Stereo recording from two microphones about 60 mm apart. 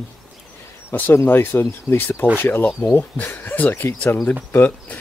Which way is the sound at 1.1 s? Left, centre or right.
Left.